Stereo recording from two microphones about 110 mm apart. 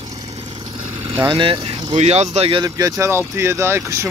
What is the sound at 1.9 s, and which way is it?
Speech, 90° right.